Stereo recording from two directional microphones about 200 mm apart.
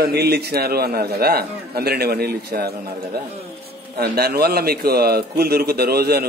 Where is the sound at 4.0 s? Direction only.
50° right (ahead or behind).